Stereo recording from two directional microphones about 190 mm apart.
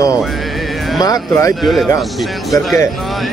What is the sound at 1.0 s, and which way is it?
Speech, 20° left (ahead or behind).